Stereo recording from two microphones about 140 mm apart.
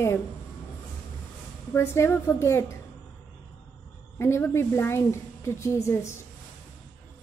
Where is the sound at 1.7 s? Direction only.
20° left (ahead or behind).